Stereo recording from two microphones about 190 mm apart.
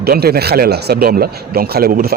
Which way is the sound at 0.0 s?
55° right (ahead or behind).